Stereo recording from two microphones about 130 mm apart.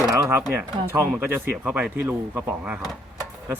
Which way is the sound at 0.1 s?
20° right (ahead or behind).